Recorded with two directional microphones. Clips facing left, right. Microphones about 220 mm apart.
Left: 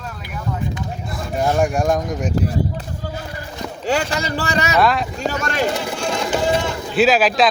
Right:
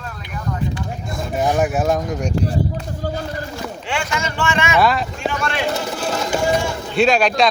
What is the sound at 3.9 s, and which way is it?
Speech, 35° left (ahead or behind).